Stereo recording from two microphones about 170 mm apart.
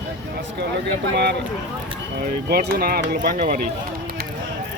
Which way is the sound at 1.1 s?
85° right.